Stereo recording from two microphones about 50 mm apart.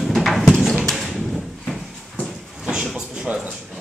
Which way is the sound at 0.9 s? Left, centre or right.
Centre.